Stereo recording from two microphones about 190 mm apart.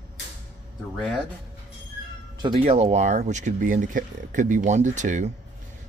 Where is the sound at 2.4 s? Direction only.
30° right (ahead or behind).